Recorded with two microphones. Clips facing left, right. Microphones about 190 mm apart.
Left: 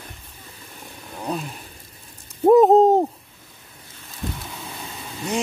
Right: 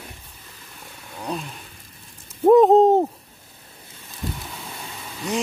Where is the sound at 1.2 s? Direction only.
5° left (ahead or behind).